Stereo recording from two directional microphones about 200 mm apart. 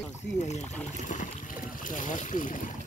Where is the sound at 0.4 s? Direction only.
35° left (ahead or behind).